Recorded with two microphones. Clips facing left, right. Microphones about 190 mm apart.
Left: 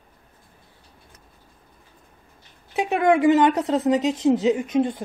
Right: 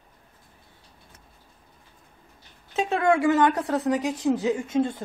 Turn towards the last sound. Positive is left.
turn(degrees=20)  # may be behind; listen again after turning